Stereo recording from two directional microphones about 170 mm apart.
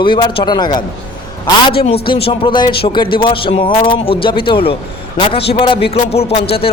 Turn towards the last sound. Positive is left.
turn(degrees=35)  # may be behind; listen again after turning